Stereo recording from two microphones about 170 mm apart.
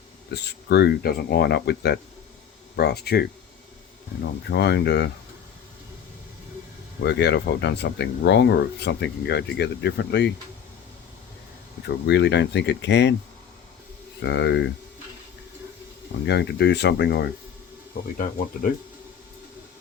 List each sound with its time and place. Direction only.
0.3 s speech: 75° left (ahead or behind)
4.4 s speech: 80° left
7.0 s speech: 90° left
11.9 s speech: 85° left
14.2 s speech: 90° left
16.2 s speech: 85° left